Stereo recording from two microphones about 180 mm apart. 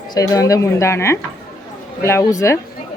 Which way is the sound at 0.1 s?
20° left (ahead or behind).